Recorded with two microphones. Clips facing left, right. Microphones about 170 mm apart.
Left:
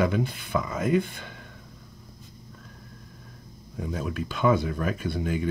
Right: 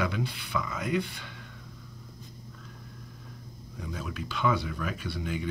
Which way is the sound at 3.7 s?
45° left (ahead or behind).